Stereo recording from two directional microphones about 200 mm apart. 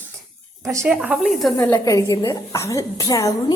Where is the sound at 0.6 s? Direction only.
15° right (ahead or behind).